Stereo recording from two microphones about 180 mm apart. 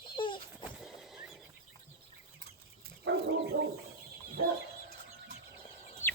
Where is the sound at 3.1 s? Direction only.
90° right.